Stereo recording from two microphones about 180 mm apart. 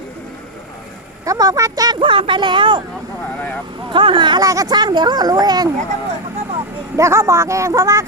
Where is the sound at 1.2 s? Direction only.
20° right (ahead or behind).